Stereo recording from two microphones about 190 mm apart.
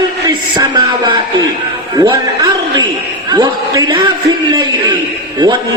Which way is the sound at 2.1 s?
20° right (ahead or behind).